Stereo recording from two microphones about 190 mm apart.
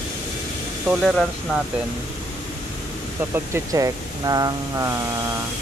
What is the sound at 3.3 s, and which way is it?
Speech, 15° right (ahead or behind).